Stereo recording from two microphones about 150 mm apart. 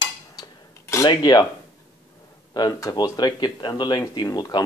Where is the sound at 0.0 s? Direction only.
25° left (ahead or behind).